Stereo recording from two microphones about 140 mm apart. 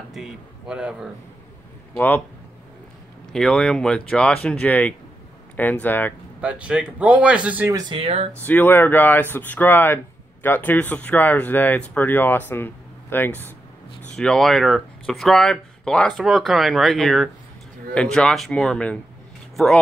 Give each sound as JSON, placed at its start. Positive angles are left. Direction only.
{"t": 0.1, "sound": "speech", "side_deg": -5}
{"t": 2.0, "sound": "speech", "side_deg": 15}
{"t": 3.3, "sound": "speech", "side_deg": 5}
{"t": 6.4, "sound": "speech", "side_deg": -5}
{"t": 7.7, "sound": "speech", "side_deg": -30}
{"t": 8.0, "sound": "speech", "side_deg": -45}
{"t": 8.4, "sound": "speech", "side_deg": 15}